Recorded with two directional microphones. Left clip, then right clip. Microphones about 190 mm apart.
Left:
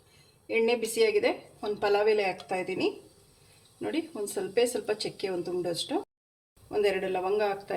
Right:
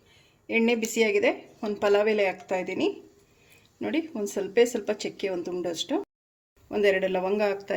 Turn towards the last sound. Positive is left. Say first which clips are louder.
# right 2 dB
turn(degrees=-50)  # may be behind; listen again after turning